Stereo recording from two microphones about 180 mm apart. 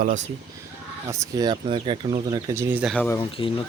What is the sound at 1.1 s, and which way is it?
Speech, 20° right (ahead or behind).